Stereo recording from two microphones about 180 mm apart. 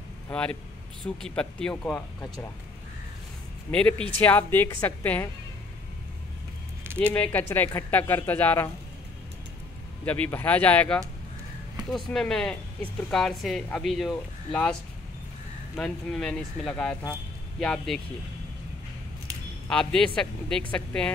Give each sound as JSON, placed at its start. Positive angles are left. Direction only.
{"t": 0.3, "sound": "speech", "side_deg": 5}
{"t": 3.7, "sound": "speech", "side_deg": 15}
{"t": 7.0, "sound": "speech", "side_deg": 10}
{"t": 10.0, "sound": "speech", "side_deg": 10}
{"t": 12.1, "sound": "speech", "side_deg": 5}
{"t": 19.7, "sound": "speech", "side_deg": 5}